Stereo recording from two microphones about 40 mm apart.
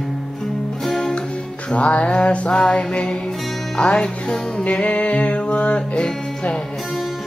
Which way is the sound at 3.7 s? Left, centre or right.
Left.